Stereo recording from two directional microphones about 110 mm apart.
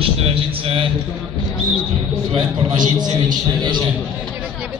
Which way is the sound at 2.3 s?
40° right (ahead or behind).